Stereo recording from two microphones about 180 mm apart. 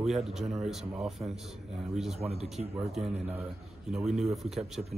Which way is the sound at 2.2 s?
35° right (ahead or behind).